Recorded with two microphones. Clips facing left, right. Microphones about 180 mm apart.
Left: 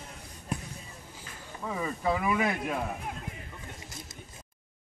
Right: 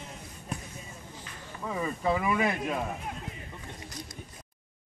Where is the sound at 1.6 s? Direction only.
Centre (ahead or behind).